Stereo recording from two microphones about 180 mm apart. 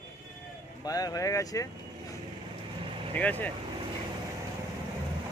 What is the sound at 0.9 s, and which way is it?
Speech, 20° left (ahead or behind).